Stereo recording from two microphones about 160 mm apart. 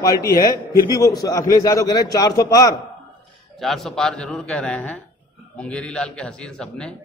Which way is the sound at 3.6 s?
Centre (ahead or behind).